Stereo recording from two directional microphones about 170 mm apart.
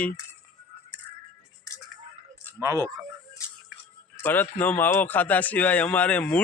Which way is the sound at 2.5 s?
20° right (ahead or behind).